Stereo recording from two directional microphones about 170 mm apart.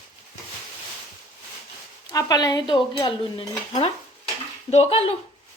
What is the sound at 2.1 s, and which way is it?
Dishes, 20° left (ahead or behind).